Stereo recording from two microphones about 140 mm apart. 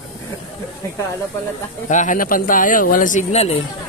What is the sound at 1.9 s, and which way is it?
A man's voice, 65° left (ahead or behind).